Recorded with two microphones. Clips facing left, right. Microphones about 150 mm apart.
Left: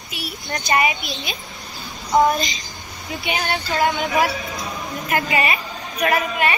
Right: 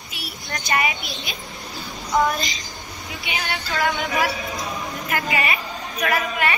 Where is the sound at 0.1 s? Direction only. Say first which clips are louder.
Left 4 dB; 20° left (ahead or behind).